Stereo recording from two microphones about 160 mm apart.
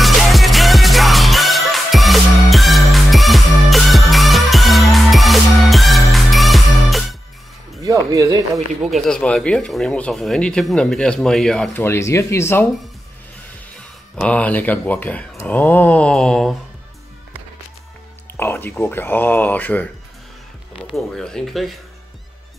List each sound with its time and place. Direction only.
0.0 s music: centre (ahead or behind)
7.8 s speech: 20° right (ahead or behind)
8.9 s speech: 5° left (ahead or behind)
11.8 s speech: 15° left (ahead or behind)
14.2 s speech: 10° left (ahead or behind)
18.4 s speech: 15° left (ahead or behind)